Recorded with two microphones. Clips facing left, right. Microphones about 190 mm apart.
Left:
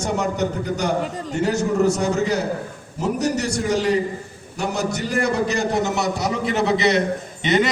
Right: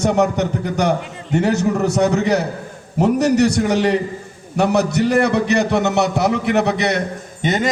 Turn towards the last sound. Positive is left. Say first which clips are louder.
# left 1 dB
turn(degrees=-45)  # may be behind; listen again after turning